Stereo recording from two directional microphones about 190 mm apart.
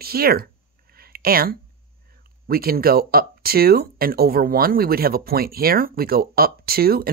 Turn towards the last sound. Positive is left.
turn(degrees=-50)  # may be behind; listen again after turning